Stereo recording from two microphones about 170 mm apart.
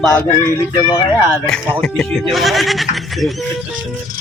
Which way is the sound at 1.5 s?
5° left (ahead or behind).